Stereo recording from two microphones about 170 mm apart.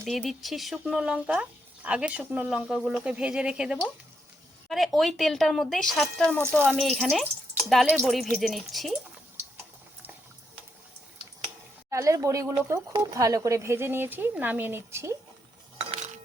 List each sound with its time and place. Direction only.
0.0 s speech: centre (ahead or behind)
11.9 s a woman's voice: 20° right (ahead or behind)
15.9 s cutlery: 45° right (ahead or behind)